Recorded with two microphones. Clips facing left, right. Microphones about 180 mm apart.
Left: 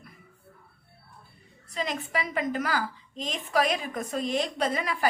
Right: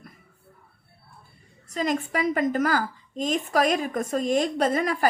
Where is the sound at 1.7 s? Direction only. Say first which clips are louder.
Right 5 dB; 45° right (ahead or behind).